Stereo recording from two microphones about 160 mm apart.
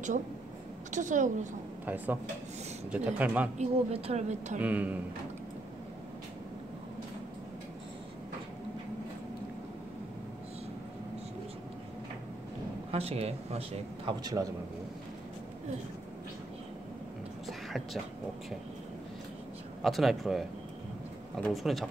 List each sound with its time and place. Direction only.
0.9 s speech: 50° right (ahead or behind)
2.9 s speech: 10° right (ahead or behind)
3.5 s speech: 45° right (ahead or behind)
4.6 s speech: 10° right (ahead or behind)
12.9 s speech: 40° right (ahead or behind)
14.2 s a man's voice: 20° right (ahead or behind)
19.8 s speech: centre (ahead or behind)